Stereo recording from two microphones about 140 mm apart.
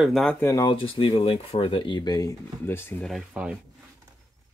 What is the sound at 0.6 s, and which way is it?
Speech, 40° left (ahead or behind).